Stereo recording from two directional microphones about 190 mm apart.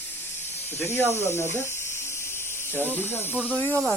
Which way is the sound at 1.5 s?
15° left (ahead or behind).